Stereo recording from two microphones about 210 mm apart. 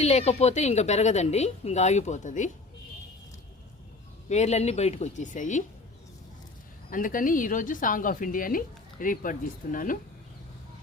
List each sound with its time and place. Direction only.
0.0 s speech: 30° left (ahead or behind)
4.3 s speech: 30° left (ahead or behind)
6.9 s speech: 40° left (ahead or behind)